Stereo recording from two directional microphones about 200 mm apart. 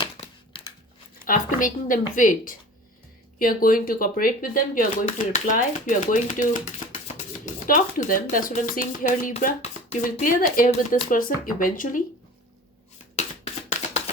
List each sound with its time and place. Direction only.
0.0 s crushing: 25° left (ahead or behind)
1.2 s speech: 40° left (ahead or behind)